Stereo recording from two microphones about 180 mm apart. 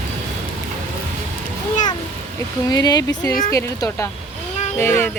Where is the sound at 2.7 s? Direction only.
20° left (ahead or behind).